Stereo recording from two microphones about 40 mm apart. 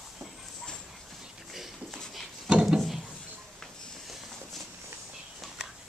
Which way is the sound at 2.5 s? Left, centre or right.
Right.